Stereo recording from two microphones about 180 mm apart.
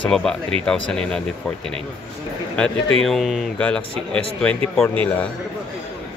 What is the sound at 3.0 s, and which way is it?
Speech, centre (ahead or behind).